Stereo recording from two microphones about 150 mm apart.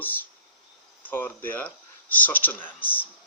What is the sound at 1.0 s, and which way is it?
Speech, 10° left (ahead or behind).